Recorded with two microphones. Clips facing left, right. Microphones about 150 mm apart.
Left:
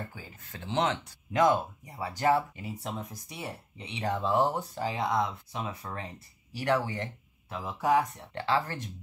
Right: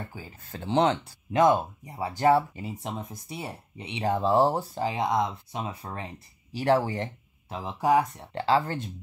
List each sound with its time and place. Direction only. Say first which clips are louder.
0.1 s speech: right 5 dB; 30° right (ahead or behind)